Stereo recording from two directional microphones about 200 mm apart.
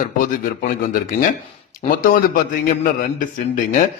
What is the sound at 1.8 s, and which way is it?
A man's voice, 45° left (ahead or behind).